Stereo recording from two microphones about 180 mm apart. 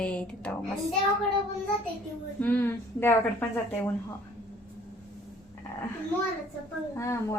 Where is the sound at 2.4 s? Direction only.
10° left (ahead or behind).